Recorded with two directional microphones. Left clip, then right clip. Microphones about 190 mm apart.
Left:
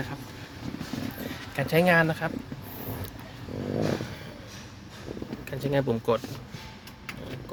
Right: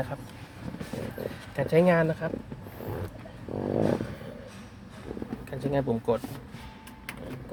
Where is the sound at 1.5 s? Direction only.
5° right (ahead or behind).